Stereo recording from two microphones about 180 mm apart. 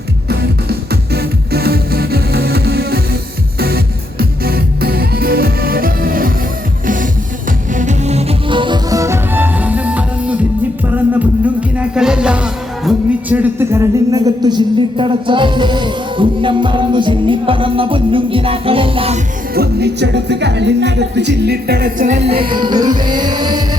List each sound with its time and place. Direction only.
0.3 s music: 60° right (ahead or behind); by 10.3 s 10° right (ahead or behind)
11.4 s music: 5° right (ahead or behind); by 19.2 s 30° right (ahead or behind)
19.5 s music: 65° right (ahead or behind); by 23.6 s 25° right (ahead or behind)